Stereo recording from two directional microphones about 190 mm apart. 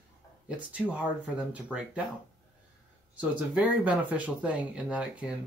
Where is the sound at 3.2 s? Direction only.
5° right (ahead or behind).